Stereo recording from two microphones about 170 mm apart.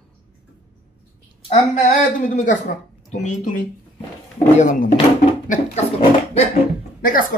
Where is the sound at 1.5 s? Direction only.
45° left (ahead or behind).